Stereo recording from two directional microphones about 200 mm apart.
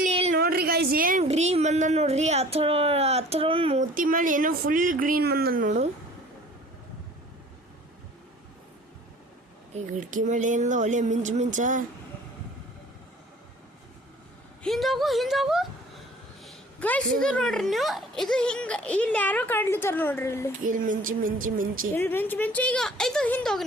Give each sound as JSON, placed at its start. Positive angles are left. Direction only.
{"t": 0.1, "sound": "a sound", "side_deg": -30}
{"t": 0.3, "sound": "a sound", "side_deg": -50}
{"t": 1.2, "sound": "speech", "side_deg": -30}
{"t": 3.9, "sound": "speech", "side_deg": -45}
{"t": 9.7, "sound": "speech", "side_deg": -40}
{"t": 14.6, "sound": "a woman's voice", "side_deg": 0}
{"t": 20.7, "sound": "speech", "side_deg": -40}
{"t": 21.9, "sound": "speech", "side_deg": 10}